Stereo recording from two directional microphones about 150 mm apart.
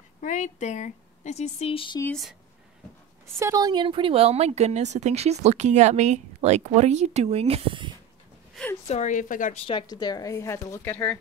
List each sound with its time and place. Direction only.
0.2 s a woman's voice: 55° left (ahead or behind); by 2.0 s 35° left (ahead or behind)
3.3 s speech: 20° right (ahead or behind)
8.8 s a woman's voice: 50° left (ahead or behind)
9.7 s speech: 30° left (ahead or behind); by 11.1 s 10° left (ahead or behind)